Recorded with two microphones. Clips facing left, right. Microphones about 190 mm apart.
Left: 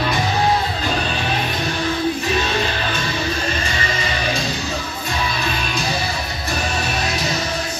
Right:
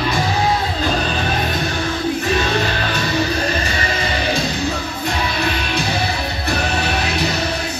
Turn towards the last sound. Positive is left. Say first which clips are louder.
# right 3 dB
turn(degrees=-60)  # may be behind; listen again after turning